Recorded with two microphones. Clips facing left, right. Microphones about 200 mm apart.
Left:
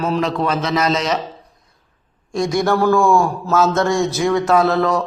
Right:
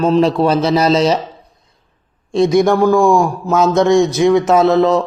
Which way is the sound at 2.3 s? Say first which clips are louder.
Right 6 dB; 20° right (ahead or behind).